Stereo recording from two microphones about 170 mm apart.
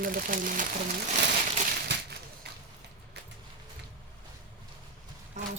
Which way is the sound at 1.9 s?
75° right (ahead or behind).